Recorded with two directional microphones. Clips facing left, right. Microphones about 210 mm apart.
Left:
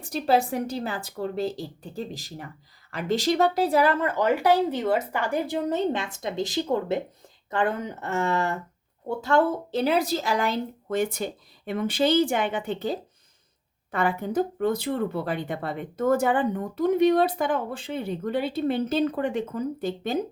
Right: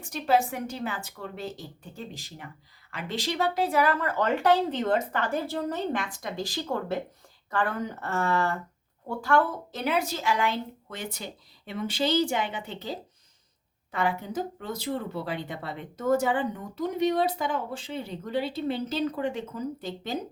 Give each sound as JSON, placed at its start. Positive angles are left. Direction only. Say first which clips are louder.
{"t": 0.0, "sound": "a woman's voice", "louder": "left 2 dB", "side_deg": 35}
{"t": 4.2, "sound": "a woman's voice", "louder": "left 2 dB", "side_deg": 10}